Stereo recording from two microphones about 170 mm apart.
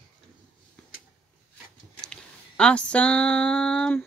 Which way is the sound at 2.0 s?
5° left (ahead or behind).